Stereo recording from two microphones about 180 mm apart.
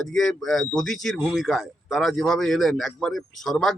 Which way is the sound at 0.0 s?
5° left (ahead or behind).